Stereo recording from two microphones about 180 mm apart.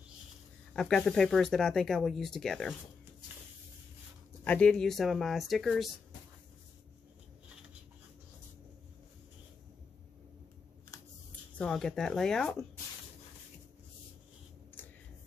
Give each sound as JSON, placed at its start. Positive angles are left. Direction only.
{"t": 0.7, "sound": "speech", "side_deg": 5}
{"t": 4.5, "sound": "speech", "side_deg": 5}
{"t": 10.9, "sound": "a sound", "side_deg": 20}
{"t": 11.5, "sound": "speech", "side_deg": 5}